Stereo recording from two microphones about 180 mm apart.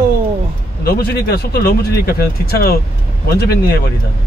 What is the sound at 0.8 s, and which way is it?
Speech, 55° left (ahead or behind).